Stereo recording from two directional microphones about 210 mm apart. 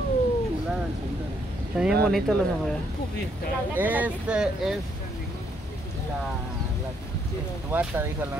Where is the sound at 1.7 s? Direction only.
5° right (ahead or behind).